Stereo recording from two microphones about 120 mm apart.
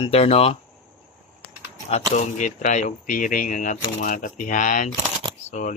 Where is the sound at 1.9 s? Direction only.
75° left (ahead or behind); by 5.7 s 90° left.